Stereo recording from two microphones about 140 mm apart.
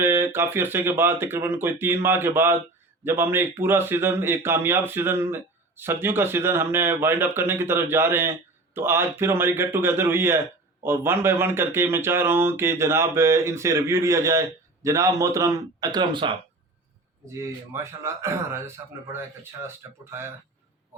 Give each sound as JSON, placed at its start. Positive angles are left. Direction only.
{"t": 0.0, "sound": "a man's voice", "side_deg": -15}
{"t": 17.3, "sound": "speech", "side_deg": -20}